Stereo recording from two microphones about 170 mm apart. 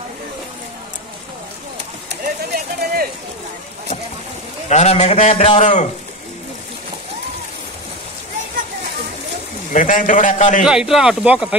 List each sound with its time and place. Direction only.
2.2 s a sound: 60° right (ahead or behind)
4.6 s a man's voice: 40° left (ahead or behind)
9.7 s a man's voice: 50° left (ahead or behind)
10.6 s speech: 5° right (ahead or behind)